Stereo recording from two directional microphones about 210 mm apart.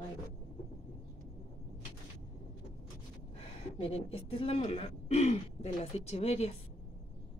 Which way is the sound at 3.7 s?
30° left (ahead or behind).